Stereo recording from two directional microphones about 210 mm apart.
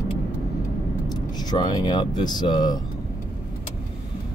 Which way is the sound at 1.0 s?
20° left (ahead or behind).